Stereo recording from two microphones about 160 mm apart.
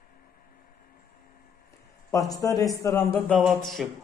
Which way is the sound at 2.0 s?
20° left (ahead or behind).